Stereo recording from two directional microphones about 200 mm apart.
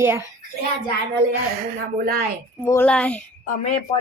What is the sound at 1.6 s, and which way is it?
Speech, 50° right (ahead or behind).